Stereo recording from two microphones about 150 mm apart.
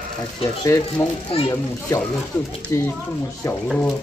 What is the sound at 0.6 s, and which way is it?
A man's voice, 20° left (ahead or behind).